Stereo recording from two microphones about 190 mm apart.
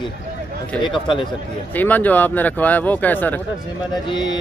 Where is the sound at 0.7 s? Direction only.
5° left (ahead or behind).